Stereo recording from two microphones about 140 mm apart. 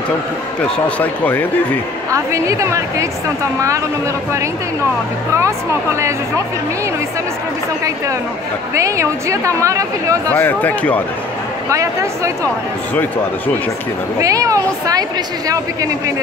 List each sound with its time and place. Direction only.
0.6 s speech: 10° left (ahead or behind)
2.1 s a woman's voice: 20° right (ahead or behind)
5.9 s a woman's voice: 20° right (ahead or behind)
8.7 s a woman's voice: 20° right (ahead or behind)
10.3 s speech: 10° left (ahead or behind)
11.7 s a woman's voice: 20° right (ahead or behind)
14.2 s a woman's voice: 25° right (ahead or behind)